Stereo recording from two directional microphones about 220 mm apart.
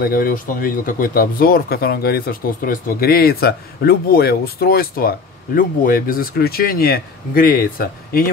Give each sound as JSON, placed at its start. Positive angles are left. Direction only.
{"t": 0.0, "sound": "speech", "side_deg": 40}